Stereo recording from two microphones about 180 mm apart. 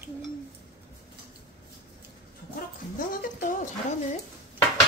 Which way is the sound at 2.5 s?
50° left (ahead or behind).